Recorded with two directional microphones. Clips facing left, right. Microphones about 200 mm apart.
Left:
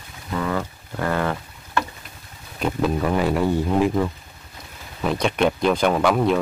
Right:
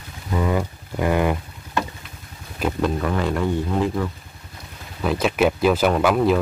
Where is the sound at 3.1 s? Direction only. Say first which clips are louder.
Left 2 dB; 10° left (ahead or behind).